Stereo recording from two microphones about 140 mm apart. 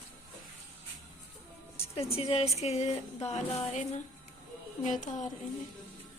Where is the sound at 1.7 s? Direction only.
45° left (ahead or behind); by 5.3 s 60° left (ahead or behind).